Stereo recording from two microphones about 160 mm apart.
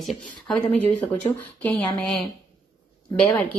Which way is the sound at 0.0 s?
5° left (ahead or behind).